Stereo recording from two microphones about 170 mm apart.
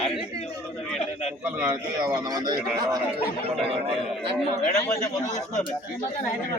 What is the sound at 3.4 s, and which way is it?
Speech, 35° right (ahead or behind).